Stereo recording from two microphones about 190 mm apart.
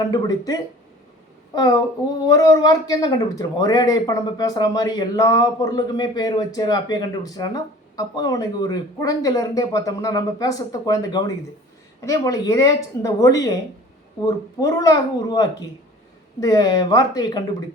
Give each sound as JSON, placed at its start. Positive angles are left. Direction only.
{"t": 0.0, "sound": "a woman's voice", "side_deg": 20}